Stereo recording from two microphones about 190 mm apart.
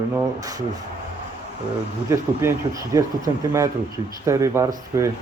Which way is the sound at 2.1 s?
15° right (ahead or behind).